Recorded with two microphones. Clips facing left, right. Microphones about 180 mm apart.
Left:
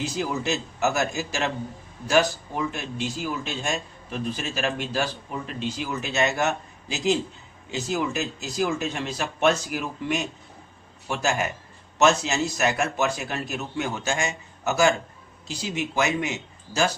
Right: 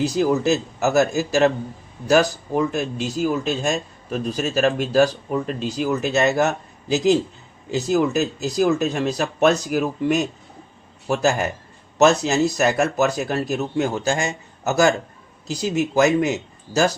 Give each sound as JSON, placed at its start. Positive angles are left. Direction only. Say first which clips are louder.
{"t": 0.0, "sound": "speech", "louder": "right 9 dB", "side_deg": -35}